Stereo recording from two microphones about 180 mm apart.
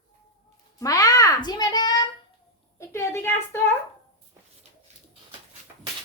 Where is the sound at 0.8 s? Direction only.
20° left (ahead or behind).